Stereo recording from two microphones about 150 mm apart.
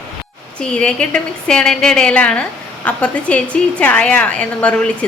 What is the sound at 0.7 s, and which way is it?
A woman's voice, 5° left (ahead or behind).